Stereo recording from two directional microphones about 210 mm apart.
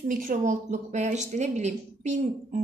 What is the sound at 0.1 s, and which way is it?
A woman's voice, 40° right (ahead or behind).